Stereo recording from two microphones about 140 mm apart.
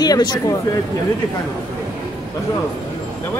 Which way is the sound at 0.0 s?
30° left (ahead or behind).